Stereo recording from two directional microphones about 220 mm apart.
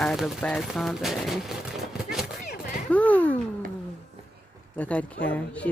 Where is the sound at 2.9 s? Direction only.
5° left (ahead or behind).